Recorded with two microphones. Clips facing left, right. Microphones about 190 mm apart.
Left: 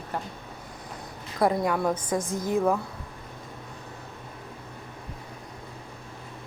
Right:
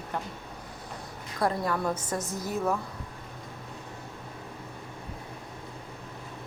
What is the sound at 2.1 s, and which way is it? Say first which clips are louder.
Speech: left 5 dB; 90° left.